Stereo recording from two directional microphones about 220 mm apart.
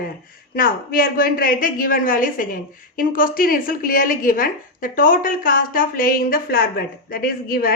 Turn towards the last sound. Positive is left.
turn(degrees=40)  # may be behind; listen again after turning